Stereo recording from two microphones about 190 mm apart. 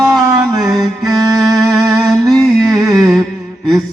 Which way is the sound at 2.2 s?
20° right (ahead or behind).